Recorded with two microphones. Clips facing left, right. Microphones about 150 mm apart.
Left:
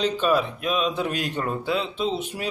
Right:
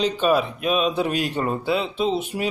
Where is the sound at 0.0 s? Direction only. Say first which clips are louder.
Right 2 dB; 15° right (ahead or behind).